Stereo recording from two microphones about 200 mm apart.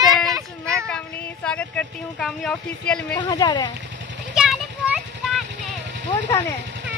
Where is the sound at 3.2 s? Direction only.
20° left (ahead or behind).